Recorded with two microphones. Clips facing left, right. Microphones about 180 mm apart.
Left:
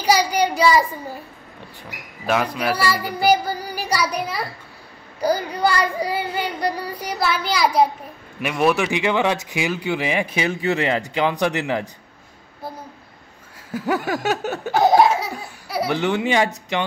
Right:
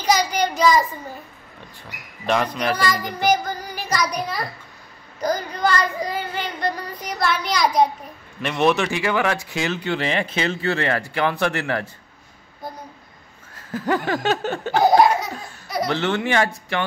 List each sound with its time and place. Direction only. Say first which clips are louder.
0.0 s child singing: left 2 dB; 10° left (ahead or behind)
2.2 s a man's voice: even; 5° left (ahead or behind)
13.6 s laughter: even; 10° left (ahead or behind)